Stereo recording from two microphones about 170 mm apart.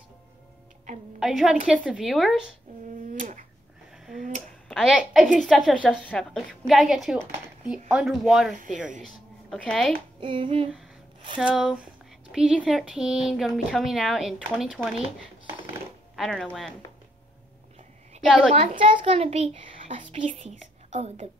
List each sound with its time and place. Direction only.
1.2 s speech: centre (ahead or behind)
3.1 s a sound: 50° right (ahead or behind)
4.0 s a sound: centre (ahead or behind)
4.6 s speech: 5° right (ahead or behind)
10.2 s a child's voice: 30° right (ahead or behind)
11.4 s a sound: 5° right (ahead or behind)
12.5 s speech: centre (ahead or behind)
16.2 s speech: 5° left (ahead or behind)
18.5 s a child's voice: 30° right (ahead or behind)